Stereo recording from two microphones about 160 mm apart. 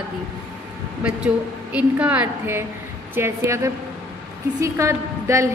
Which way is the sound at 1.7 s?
10° right (ahead or behind).